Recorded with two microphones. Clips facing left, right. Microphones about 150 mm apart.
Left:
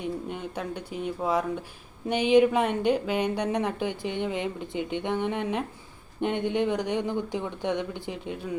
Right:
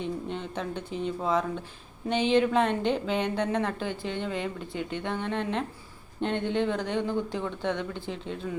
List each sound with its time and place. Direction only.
0.0 s speech: 10° left (ahead or behind)